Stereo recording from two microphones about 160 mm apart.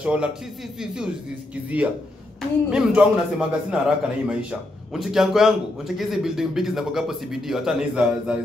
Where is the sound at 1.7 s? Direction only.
10° right (ahead or behind).